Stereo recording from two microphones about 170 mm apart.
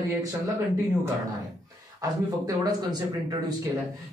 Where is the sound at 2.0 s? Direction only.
20° right (ahead or behind).